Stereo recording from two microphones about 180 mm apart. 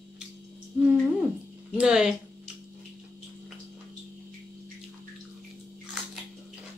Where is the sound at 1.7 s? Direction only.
5° right (ahead or behind).